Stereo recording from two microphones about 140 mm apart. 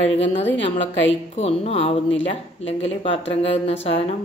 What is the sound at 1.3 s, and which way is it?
Speech, 45° left (ahead or behind).